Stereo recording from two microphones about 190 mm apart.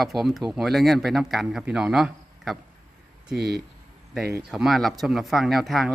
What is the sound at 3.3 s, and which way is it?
Speech, 55° right (ahead or behind).